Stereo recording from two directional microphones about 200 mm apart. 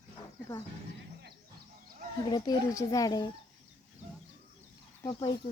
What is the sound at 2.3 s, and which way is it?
Speech, 20° left (ahead or behind).